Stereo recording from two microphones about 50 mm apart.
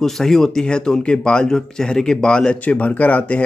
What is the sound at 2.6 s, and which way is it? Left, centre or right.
Speech, left.